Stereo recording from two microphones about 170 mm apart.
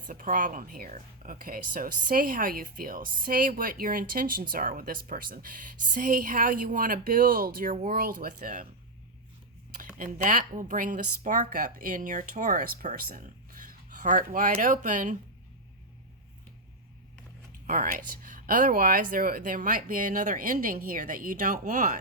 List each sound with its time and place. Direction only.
0.1 s speech: 55° right (ahead or behind)
10.0 s speech: 50° right (ahead or behind)
17.7 s speech: 50° right (ahead or behind)